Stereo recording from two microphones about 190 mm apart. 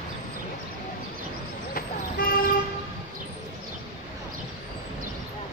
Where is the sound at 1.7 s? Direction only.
50° left (ahead or behind).